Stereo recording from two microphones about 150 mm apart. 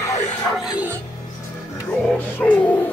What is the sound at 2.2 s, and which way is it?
Music, 10° left (ahead or behind).